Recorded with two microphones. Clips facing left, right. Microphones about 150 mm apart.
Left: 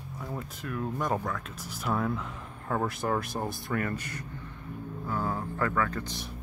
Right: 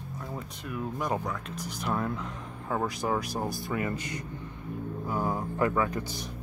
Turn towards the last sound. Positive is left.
turn(degrees=0)  # may be behind; listen again after turning